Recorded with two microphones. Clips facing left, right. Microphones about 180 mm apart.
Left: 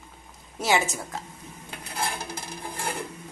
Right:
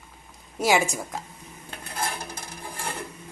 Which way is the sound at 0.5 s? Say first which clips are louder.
Right 2 dB; 10° right (ahead or behind).